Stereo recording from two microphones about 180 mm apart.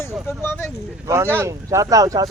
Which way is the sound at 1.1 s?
15° right (ahead or behind).